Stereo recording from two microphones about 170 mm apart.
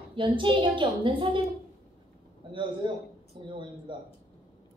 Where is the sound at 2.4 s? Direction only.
30° right (ahead or behind).